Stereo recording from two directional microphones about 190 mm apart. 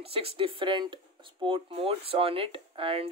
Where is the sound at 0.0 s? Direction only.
30° right (ahead or behind).